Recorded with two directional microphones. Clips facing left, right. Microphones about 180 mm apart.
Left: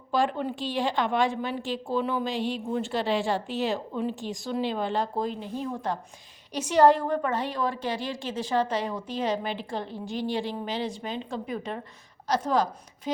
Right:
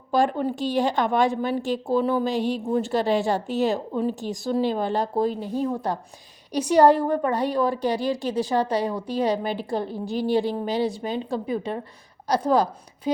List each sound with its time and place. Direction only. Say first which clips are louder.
0.1 s a woman's voice: right 4 dB; 45° right (ahead or behind)